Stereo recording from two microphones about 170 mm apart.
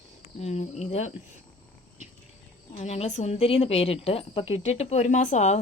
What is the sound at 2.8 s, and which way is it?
A woman's voice, 40° left (ahead or behind).